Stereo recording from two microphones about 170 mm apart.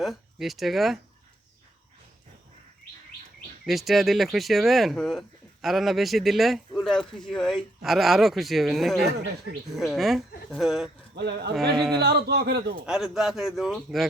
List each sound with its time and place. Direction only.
0.0 s speech: centre (ahead or behind)
3.7 s speech: centre (ahead or behind)
11.1 s a man's voice: 75° right (ahead or behind)
12.8 s speech: 5° right (ahead or behind)